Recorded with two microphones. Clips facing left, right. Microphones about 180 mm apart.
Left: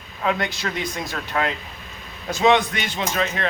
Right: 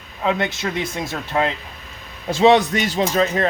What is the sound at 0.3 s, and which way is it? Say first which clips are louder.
Speech: right 3 dB; 25° right (ahead or behind).